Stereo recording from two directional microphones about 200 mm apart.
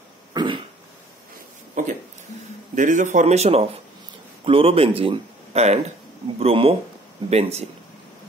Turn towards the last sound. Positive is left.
turn(degrees=-30)  # may be behind; listen again after turning